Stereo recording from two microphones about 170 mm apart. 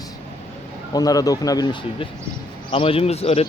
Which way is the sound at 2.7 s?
35° left (ahead or behind).